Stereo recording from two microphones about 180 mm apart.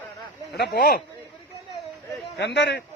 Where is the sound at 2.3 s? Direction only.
70° left (ahead or behind).